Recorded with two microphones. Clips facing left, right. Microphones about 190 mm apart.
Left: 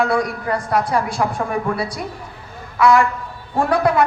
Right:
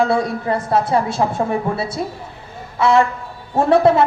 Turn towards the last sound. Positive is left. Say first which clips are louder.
# right 4 dB
turn(degrees=-25)  # may be behind; listen again after turning